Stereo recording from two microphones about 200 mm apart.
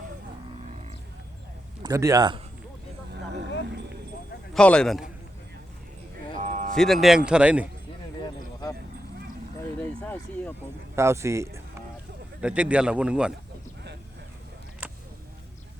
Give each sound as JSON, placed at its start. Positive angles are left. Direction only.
{"t": 1.8, "sound": "speech", "side_deg": -15}
{"t": 4.5, "sound": "speech", "side_deg": 5}
{"t": 6.3, "sound": "a sound", "side_deg": -35}
{"t": 6.7, "sound": "speech", "side_deg": 0}
{"t": 10.0, "sound": "speech", "side_deg": 10}
{"t": 10.9, "sound": "speech", "side_deg": -15}